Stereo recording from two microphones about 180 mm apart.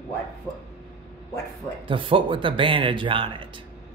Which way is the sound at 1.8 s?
30° right (ahead or behind).